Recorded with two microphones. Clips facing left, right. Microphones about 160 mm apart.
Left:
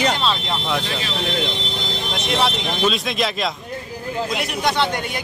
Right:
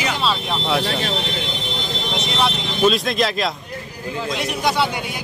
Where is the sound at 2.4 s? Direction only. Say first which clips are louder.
Right 4 dB; centre (ahead or behind).